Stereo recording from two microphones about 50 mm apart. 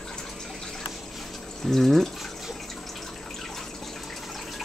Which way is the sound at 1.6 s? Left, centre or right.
Centre.